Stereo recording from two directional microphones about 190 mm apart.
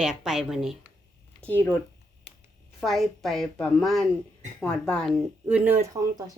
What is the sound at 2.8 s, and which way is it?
A woman's voice, centre (ahead or behind).